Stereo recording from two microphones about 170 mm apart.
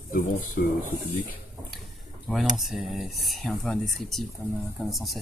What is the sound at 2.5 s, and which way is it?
Speech, centre (ahead or behind).